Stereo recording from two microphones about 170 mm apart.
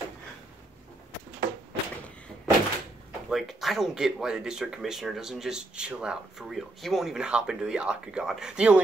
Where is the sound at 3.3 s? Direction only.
Centre (ahead or behind).